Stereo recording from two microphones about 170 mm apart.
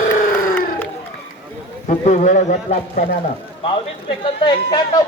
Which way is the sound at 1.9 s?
45° left (ahead or behind).